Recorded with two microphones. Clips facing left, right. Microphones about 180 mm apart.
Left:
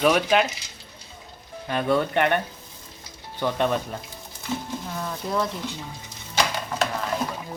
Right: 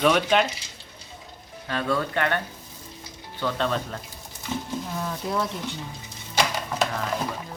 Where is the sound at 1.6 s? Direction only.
20° left (ahead or behind).